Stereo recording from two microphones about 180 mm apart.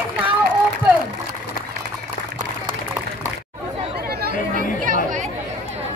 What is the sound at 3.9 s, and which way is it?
Chatter, 60° right (ahead or behind).